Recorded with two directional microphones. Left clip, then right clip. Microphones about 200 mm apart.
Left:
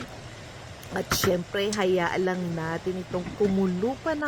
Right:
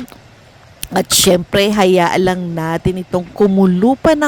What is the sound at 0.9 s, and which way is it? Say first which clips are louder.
Speech: right 13 dB; 45° right (ahead or behind).